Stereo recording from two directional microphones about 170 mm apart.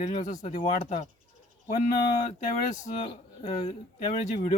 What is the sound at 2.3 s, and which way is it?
Speech, 40° left (ahead or behind).